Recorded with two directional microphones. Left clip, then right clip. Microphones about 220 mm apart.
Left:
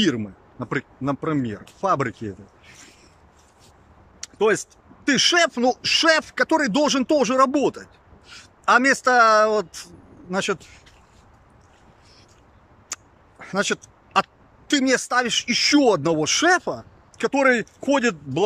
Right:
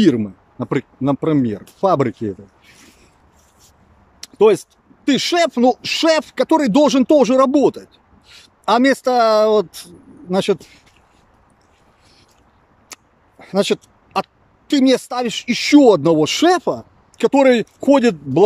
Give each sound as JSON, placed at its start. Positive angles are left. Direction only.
{"t": 0.0, "sound": "speech", "side_deg": -20}
{"t": 4.2, "sound": "speech", "side_deg": -15}
{"t": 12.9, "sound": "speech", "side_deg": -20}